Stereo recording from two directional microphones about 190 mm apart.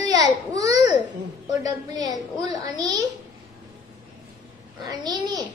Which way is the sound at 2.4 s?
20° right (ahead or behind).